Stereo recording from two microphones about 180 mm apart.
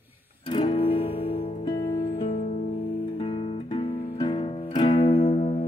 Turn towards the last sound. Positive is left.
turn(degrees=35)  # may be behind; listen again after turning